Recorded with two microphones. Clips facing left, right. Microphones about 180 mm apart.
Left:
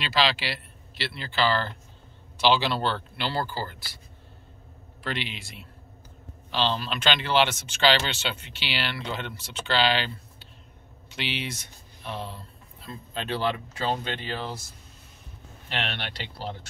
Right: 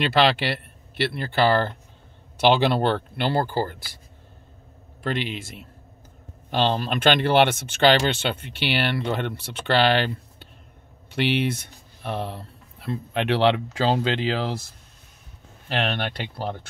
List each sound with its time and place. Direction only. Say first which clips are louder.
0.0 s speech: right 6 dB; 60° right (ahead or behind)
5.0 s speech: right 6 dB; 45° right (ahead or behind); by 14.5 s 90° right
15.7 s speech: right 7 dB; 45° right (ahead or behind)